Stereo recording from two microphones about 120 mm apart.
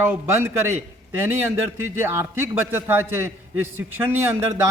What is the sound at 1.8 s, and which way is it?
A man's voice, 20° right (ahead or behind).